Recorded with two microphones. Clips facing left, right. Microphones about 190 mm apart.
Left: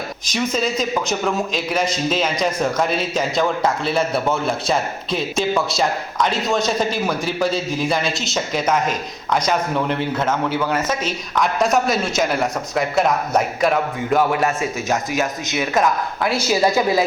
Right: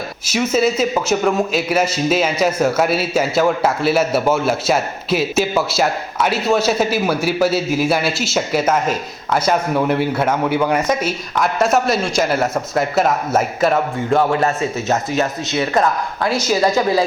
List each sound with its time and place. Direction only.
0.3 s a man's voice: 5° right (ahead or behind)
15.1 s a woman's voice: 15° left (ahead or behind)